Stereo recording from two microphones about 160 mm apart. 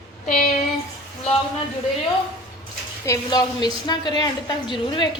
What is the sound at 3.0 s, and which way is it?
A woman's voice, 20° left (ahead or behind).